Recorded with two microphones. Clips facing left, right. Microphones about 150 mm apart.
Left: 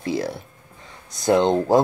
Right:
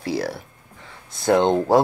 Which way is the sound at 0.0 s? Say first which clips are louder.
Even; 20° left (ahead or behind).